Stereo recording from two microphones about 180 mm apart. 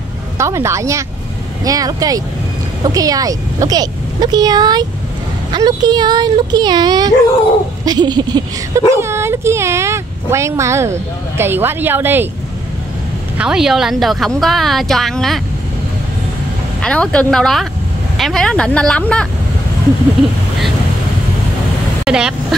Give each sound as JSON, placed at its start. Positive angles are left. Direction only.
{"t": 0.4, "sound": "a woman's voice", "side_deg": -15}
{"t": 13.4, "sound": "a woman's voice", "side_deg": -5}
{"t": 16.8, "sound": "a woman's voice", "side_deg": 5}
{"t": 22.0, "sound": "speech", "side_deg": -5}